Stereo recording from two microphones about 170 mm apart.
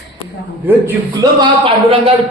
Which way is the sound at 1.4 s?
30° right (ahead or behind).